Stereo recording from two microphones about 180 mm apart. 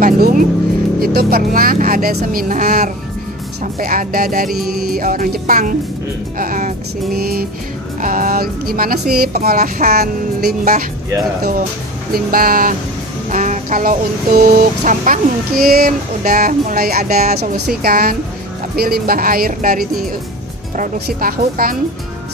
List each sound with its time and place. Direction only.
0.0 s vehicle: 50° right (ahead or behind)
1.0 s speech: 55° right (ahead or behind)
12.1 s speech: 55° right (ahead or behind)